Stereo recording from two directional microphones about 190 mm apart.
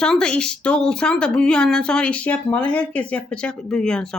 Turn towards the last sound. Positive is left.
turn(degrees=5)  # may be behind; listen again after turning